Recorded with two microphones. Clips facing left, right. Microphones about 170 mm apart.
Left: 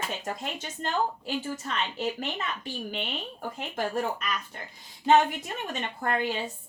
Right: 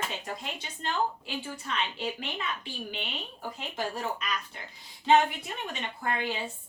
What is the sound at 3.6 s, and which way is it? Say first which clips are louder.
A woman's voice: left 5 dB; 50° left (ahead or behind).